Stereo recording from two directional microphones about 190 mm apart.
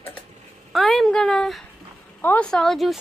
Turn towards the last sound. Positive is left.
turn(degrees=0)  # may be behind; listen again after turning